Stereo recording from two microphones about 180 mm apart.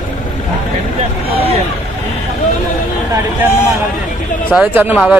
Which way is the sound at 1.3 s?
30° right (ahead or behind).